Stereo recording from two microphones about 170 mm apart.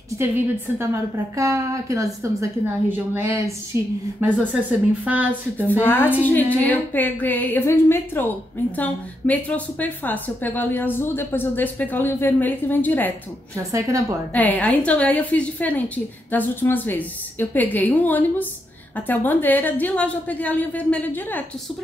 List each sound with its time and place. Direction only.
1.3 s a woman's voice: 20° right (ahead or behind)
5.7 s a woman's voice: 10° left (ahead or behind)
13.6 s a woman's voice: 20° right (ahead or behind)
14.3 s a woman's voice: 10° left (ahead or behind)